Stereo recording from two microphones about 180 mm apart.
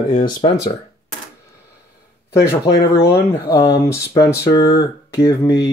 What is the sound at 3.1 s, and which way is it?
Speech, 20° left (ahead or behind).